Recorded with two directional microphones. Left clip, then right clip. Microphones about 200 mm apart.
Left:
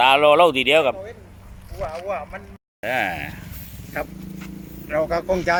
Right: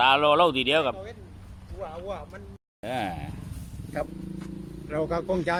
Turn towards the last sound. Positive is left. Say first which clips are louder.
# left 6 dB
turn(degrees=-50)  # may be behind; listen again after turning